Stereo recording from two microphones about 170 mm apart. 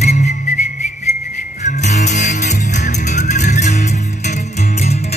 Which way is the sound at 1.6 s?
45° left (ahead or behind).